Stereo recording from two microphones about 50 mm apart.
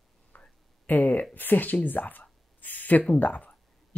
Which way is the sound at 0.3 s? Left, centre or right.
Left.